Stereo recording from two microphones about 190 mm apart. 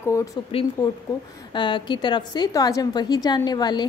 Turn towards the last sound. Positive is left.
turn(degrees=20)  # may be behind; listen again after turning